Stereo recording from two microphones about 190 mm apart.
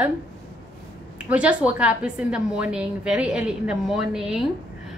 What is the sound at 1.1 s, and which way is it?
A woman's voice, 5° right (ahead or behind).